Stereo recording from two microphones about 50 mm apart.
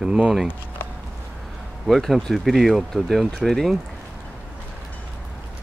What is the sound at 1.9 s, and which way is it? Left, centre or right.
Speech, centre.